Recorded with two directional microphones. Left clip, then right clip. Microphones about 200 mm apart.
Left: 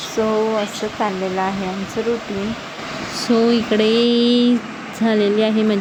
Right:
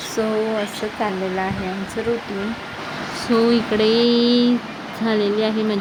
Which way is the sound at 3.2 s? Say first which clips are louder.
Left 1 dB; 25° left (ahead or behind).